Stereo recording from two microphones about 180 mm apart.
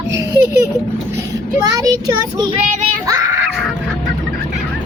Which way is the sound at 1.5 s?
20° right (ahead or behind).